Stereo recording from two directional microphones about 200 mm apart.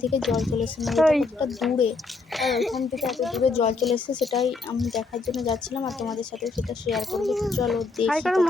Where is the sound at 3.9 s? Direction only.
25° left (ahead or behind).